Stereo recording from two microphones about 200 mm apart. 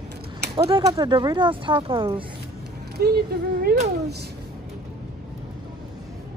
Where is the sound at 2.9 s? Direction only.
50° right (ahead or behind).